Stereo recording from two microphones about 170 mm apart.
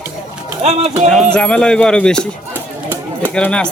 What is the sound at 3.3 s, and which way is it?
Speech, 5° left (ahead or behind).